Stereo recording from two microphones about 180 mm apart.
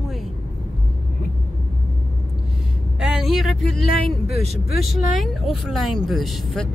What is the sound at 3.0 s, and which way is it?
Speech, centre (ahead or behind).